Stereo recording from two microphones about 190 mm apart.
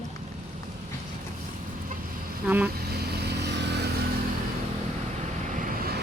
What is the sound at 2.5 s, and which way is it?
Speech, 10° right (ahead or behind).